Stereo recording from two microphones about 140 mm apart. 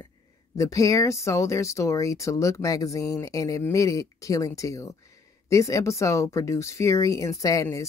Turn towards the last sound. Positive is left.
turn(degrees=20)  # may be behind; listen again after turning